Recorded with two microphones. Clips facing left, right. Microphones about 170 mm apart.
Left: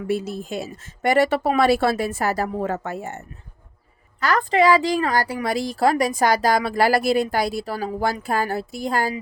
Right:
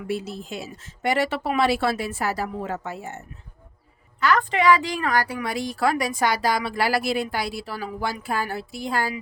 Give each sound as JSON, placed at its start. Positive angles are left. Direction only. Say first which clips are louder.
{"t": 0.1, "sound": "a woman's voice", "louder": "left 4 dB", "side_deg": 45}
{"t": 4.2, "sound": "speech", "louder": "left 3 dB", "side_deg": 40}